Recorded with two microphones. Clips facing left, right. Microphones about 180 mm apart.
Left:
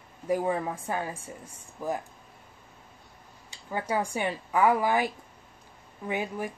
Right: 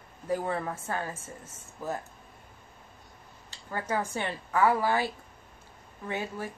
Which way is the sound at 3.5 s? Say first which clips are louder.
Left 2 dB; 15° left (ahead or behind).